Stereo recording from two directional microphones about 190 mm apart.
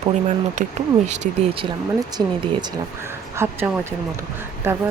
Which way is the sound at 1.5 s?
25° right (ahead or behind).